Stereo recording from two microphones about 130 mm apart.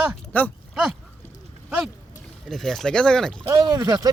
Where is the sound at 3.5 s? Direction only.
30° right (ahead or behind).